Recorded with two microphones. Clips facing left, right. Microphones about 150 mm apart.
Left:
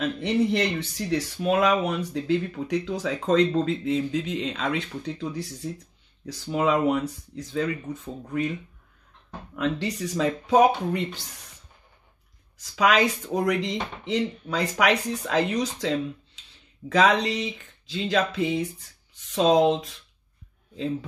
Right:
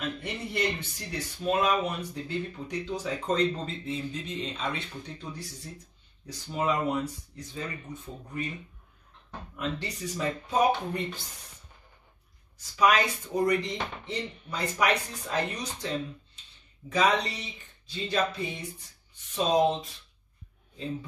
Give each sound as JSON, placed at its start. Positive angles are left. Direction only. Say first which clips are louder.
{"t": 0.2, "sound": "speech", "louder": "left 11 dB", "side_deg": 90}
{"t": 6.2, "sound": "speech", "louder": "left 5 dB", "side_deg": 90}
{"t": 9.6, "sound": "speech", "louder": "left 7 dB", "side_deg": 90}
{"t": 12.5, "sound": "speech", "louder": "left 3 dB", "side_deg": 90}
{"t": 16.9, "sound": "speech", "louder": "left 5 dB", "side_deg": 90}